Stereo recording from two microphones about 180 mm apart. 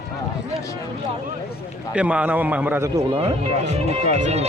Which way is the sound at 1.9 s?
5° right (ahead or behind).